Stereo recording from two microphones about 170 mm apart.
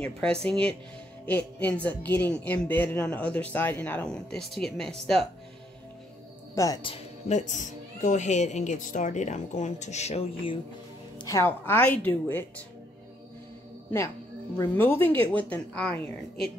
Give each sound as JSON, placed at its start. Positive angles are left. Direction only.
{"t": 0.0, "sound": "speech", "side_deg": 5}
{"t": 6.5, "sound": "a man's voice", "side_deg": 20}
{"t": 7.2, "sound": "speech", "side_deg": 45}
{"t": 11.1, "sound": "speech", "side_deg": 20}
{"t": 14.6, "sound": "speech", "side_deg": 10}